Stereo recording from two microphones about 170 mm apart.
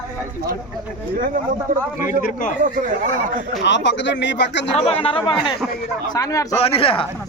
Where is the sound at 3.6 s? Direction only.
90° left.